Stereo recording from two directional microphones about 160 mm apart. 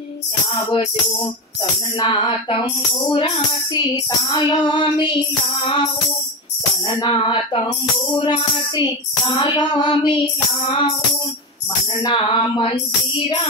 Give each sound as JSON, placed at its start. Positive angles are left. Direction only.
{"t": 2.0, "sound": "music", "side_deg": 30}
{"t": 5.6, "sound": "speech", "side_deg": 35}
{"t": 7.0, "sound": "speech", "side_deg": 30}
{"t": 8.2, "sound": "music", "side_deg": 30}
{"t": 10.7, "sound": "speech", "side_deg": 30}
{"t": 12.0, "sound": "speech", "side_deg": 30}